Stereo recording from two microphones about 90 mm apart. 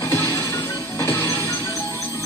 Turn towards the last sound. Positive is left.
turn(degrees=30)  # may be behind; listen again after turning